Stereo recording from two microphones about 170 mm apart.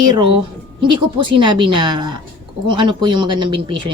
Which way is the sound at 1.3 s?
30° right (ahead or behind).